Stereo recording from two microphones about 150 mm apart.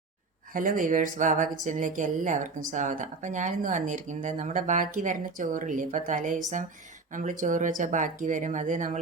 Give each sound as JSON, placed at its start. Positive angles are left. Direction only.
{"t": 0.5, "sound": "speech", "side_deg": -65}